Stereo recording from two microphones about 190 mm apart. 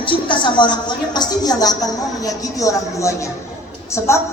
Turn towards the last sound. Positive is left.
turn(degrees=15)  # may be behind; listen again after turning